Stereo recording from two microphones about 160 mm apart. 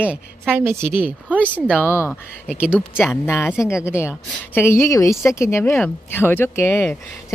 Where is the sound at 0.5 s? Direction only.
15° right (ahead or behind).